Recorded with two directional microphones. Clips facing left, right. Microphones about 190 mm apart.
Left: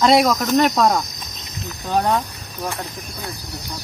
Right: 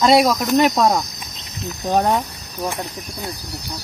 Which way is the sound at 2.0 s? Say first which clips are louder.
Right 1 dB; 15° right (ahead or behind).